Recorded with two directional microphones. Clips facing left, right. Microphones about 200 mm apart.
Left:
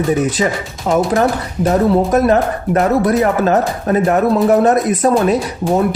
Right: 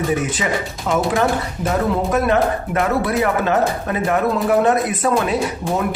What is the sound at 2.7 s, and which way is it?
Speech, 40° left (ahead or behind).